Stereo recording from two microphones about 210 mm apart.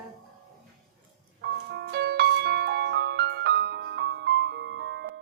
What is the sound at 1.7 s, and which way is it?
Music, 50° right (ahead or behind).